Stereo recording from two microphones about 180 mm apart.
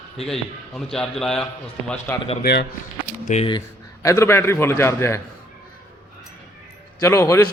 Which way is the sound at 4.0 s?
15° left (ahead or behind).